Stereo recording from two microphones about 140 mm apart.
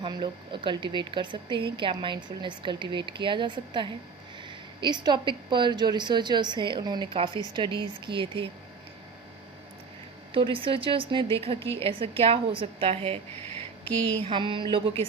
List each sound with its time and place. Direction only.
0.0 s speech: 35° right (ahead or behind)
10.3 s speech: 40° right (ahead or behind)
14.3 s speech: 35° right (ahead or behind)